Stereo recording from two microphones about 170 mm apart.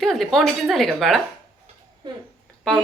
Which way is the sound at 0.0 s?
Centre (ahead or behind).